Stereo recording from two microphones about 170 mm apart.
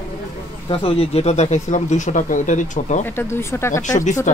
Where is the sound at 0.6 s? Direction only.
35° left (ahead or behind).